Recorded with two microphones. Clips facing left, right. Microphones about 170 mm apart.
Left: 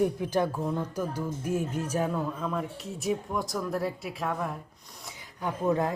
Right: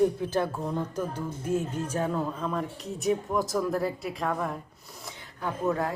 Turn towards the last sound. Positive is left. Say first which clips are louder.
# left 1 dB
turn(degrees=20)  # may be behind; listen again after turning